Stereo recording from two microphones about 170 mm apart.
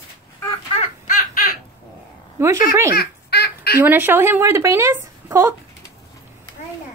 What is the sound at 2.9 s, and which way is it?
Speech, 70° left (ahead or behind).